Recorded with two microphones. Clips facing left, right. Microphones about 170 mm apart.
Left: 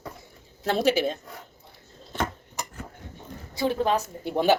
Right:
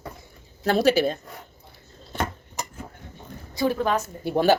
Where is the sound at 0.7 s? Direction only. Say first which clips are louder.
Right 3 dB; 20° left (ahead or behind).